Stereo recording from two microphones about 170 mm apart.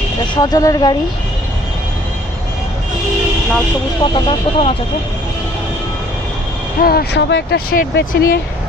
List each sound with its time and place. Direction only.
0.4 s speech: 20° left (ahead or behind)
4.0 s speech: 25° left (ahead or behind)
6.8 s speech: 65° left (ahead or behind)